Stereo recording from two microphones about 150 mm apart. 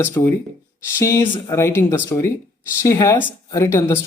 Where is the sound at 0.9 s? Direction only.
20° left (ahead or behind).